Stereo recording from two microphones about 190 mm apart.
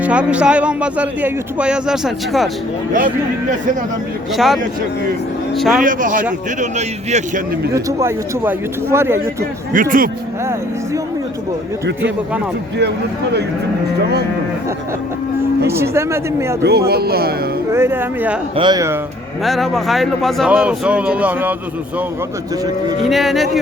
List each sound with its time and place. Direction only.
0.0 s speech: 5° right (ahead or behind)
4.4 s speech: centre (ahead or behind)
5.8 s a man's voice: 45° right (ahead or behind)
7.7 s speech: 15° right (ahead or behind)
9.7 s speech: 45° right (ahead or behind)
10.4 s speech: 15° right (ahead or behind)
15.6 s speech: 15° right (ahead or behind)
16.6 s speech: 55° right (ahead or behind)
17.7 s speech: 15° right (ahead or behind)
18.5 s speech: 25° right (ahead or behind)
19.4 s speech: centre (ahead or behind)
23.0 s speech: centre (ahead or behind)